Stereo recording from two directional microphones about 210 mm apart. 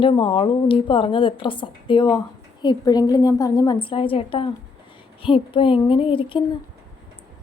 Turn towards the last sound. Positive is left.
turn(degrees=25)  # may be behind; listen again after turning